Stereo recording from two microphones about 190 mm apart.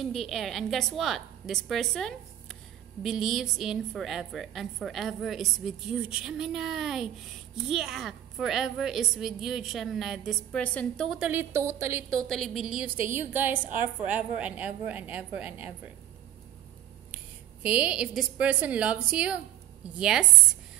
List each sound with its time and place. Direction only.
0.0 s a woman's voice: centre (ahead or behind); by 12.0 s 15° right (ahead or behind)
12.2 s a woman's voice: centre (ahead or behind)
17.6 s a woman's voice: 5° right (ahead or behind)